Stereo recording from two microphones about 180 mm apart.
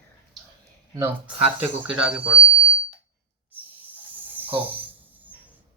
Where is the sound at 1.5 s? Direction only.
10° right (ahead or behind).